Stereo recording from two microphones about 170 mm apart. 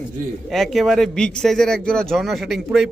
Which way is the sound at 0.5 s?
Centre (ahead or behind).